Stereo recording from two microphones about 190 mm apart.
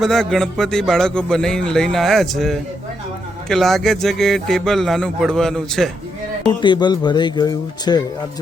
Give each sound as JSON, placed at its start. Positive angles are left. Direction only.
{"t": 0.0, "sound": "speech", "side_deg": 0}
{"t": 6.6, "sound": "speech", "side_deg": 25}